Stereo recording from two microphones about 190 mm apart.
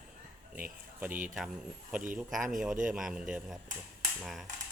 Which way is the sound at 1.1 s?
45° right (ahead or behind).